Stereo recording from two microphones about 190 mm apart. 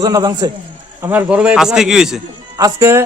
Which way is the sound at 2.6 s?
15° right (ahead or behind).